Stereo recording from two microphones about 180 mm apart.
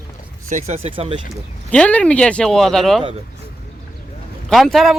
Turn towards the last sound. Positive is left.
turn(degrees=0)  # may be behind; listen again after turning